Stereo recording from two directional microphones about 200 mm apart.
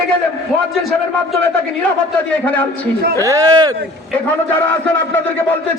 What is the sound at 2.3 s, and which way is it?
Speech, 5° left (ahead or behind).